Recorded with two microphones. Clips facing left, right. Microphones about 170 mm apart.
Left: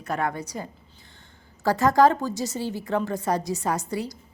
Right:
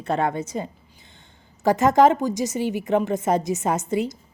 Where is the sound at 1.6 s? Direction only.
20° right (ahead or behind).